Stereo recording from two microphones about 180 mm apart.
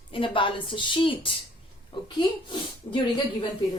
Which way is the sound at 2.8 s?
25° left (ahead or behind).